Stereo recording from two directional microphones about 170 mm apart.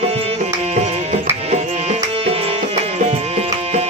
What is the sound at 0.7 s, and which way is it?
Music, 40° right (ahead or behind).